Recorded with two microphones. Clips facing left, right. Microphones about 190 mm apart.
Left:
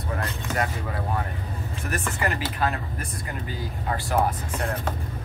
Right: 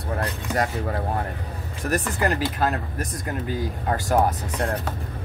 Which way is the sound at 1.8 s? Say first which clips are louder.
Right 5 dB; 40° right (ahead or behind).